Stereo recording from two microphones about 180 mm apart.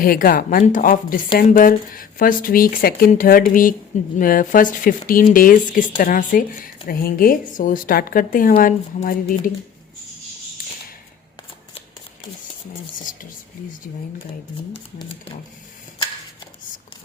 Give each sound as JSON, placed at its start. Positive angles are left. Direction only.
{"t": 0.0, "sound": "speech", "side_deg": 55}
{"t": 14.7, "sound": "speech", "side_deg": 30}